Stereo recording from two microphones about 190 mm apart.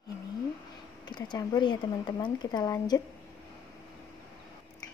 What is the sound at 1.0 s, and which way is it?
Speech, 20° left (ahead or behind).